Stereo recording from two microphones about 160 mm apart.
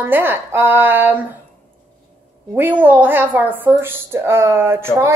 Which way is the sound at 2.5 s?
10° right (ahead or behind).